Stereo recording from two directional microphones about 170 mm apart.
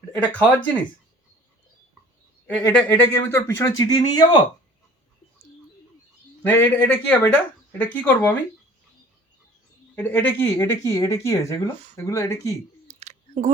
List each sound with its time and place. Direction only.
0.3 s speech: 10° left (ahead or behind)
2.5 s speech: 5° left (ahead or behind); by 4.4 s 25° left (ahead or behind)
6.4 s speech: 10° left (ahead or behind)
9.9 s speech: 10° left (ahead or behind)
12.9 s a sound: 40° right (ahead or behind)